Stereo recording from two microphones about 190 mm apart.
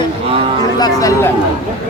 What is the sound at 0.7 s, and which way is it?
Speech, 20° left (ahead or behind).